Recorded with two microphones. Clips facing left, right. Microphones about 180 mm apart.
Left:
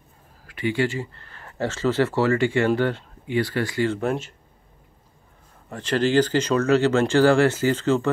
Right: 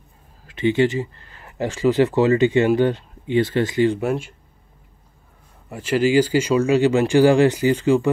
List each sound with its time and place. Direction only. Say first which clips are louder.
0.5 s speech: right 6 dB; 20° right (ahead or behind)
5.7 s speech: right 3 dB; 10° right (ahead or behind)